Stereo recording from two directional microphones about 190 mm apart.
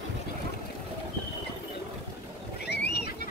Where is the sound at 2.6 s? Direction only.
60° left (ahead or behind).